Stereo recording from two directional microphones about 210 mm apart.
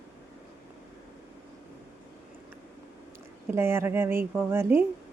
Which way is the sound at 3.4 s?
10° right (ahead or behind).